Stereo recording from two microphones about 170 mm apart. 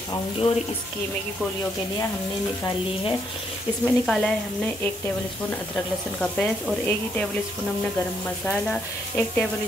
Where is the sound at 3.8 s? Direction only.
5° left (ahead or behind).